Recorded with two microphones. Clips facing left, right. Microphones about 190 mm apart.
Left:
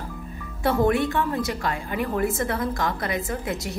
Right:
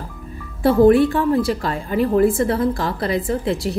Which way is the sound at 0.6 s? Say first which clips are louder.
Right 9 dB; 30° right (ahead or behind).